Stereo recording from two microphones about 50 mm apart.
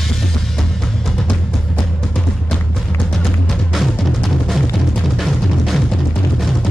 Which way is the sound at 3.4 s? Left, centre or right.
Centre.